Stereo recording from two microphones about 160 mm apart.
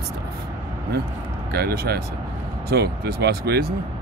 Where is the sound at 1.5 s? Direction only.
75° right (ahead or behind).